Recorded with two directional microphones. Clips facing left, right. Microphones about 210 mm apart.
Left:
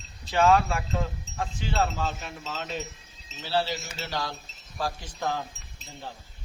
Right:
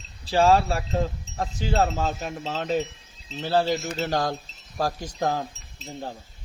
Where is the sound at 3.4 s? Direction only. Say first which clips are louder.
Right 6 dB; 45° right (ahead or behind).